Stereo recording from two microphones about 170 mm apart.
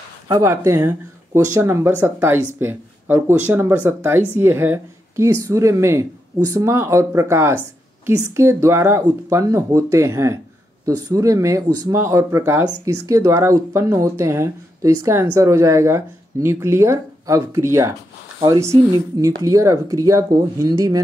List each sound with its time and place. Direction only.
0.3 s speech: 15° right (ahead or behind)